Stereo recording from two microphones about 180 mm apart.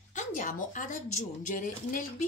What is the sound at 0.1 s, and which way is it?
A woman's voice, 40° left (ahead or behind).